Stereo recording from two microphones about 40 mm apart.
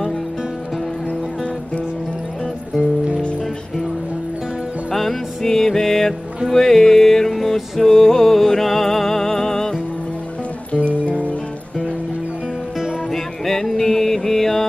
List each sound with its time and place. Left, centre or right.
4.9 s music: centre
10.9 s music: left
13.1 s music: centre